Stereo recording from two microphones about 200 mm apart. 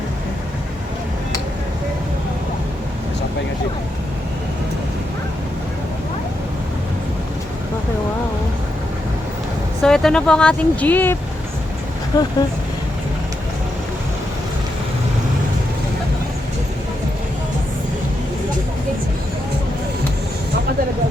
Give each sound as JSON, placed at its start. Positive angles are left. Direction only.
{"t": 9.8, "sound": "speech", "side_deg": 5}
{"t": 12.1, "sound": "speech", "side_deg": 20}